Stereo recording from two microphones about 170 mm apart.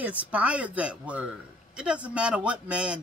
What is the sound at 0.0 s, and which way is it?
Speech, 10° right (ahead or behind).